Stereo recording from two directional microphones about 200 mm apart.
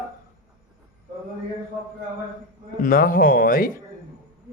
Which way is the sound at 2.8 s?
45° left (ahead or behind).